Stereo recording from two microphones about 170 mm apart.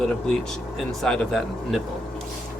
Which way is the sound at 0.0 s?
5° left (ahead or behind).